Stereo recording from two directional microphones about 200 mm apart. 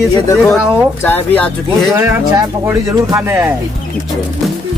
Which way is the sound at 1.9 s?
10° right (ahead or behind).